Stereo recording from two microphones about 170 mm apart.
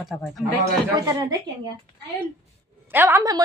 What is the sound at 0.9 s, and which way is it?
Speech, 20° right (ahead or behind).